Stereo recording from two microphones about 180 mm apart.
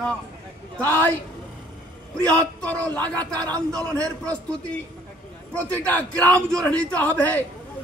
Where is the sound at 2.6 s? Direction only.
10° left (ahead or behind).